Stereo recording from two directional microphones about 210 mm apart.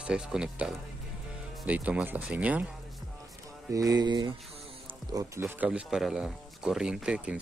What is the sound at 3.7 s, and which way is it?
Speech, 15° right (ahead or behind).